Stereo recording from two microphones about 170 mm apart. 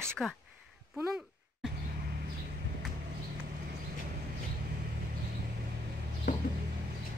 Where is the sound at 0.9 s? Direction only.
10° right (ahead or behind).